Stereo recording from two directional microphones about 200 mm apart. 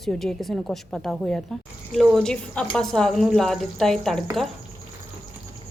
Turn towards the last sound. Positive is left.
turn(degrees=0)  # may be behind; listen again after turning